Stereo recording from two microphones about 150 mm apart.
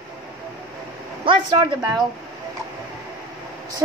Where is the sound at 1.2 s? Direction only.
35° right (ahead or behind).